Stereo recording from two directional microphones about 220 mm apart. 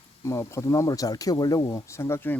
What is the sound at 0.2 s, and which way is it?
Speech, 15° left (ahead or behind).